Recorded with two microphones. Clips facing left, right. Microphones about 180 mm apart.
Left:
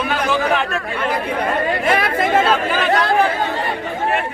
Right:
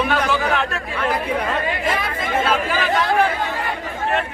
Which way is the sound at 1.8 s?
70° left (ahead or behind).